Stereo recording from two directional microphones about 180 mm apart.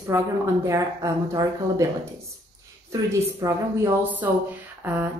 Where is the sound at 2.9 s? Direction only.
15° right (ahead or behind).